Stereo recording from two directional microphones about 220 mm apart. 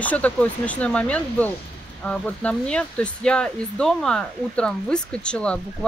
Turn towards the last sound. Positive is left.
turn(degrees=5)  # may be behind; listen again after turning